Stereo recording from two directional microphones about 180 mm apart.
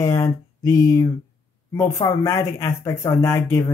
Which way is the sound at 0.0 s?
20° left (ahead or behind).